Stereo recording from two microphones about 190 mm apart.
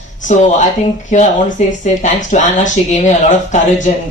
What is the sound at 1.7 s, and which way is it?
Speech, 40° left (ahead or behind).